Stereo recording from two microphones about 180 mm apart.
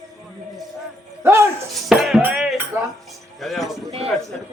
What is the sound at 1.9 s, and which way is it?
A man's voice, centre (ahead or behind).